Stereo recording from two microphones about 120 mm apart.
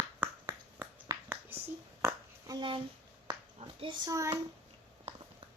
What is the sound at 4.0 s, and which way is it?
Speech, 30° right (ahead or behind).